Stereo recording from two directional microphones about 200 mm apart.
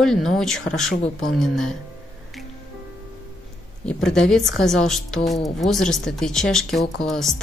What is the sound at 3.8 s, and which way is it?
Speech, 5° left (ahead or behind).